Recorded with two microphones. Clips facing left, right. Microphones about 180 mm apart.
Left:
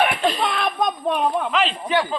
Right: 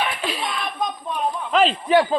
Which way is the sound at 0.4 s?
75° left (ahead or behind).